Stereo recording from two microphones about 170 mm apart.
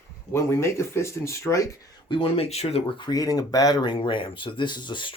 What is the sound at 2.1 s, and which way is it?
Speech, 30° left (ahead or behind).